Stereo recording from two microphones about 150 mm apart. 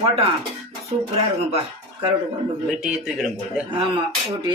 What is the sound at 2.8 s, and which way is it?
Speech, 5° right (ahead or behind).